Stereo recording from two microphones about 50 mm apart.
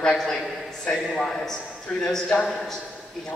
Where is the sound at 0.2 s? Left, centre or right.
Centre.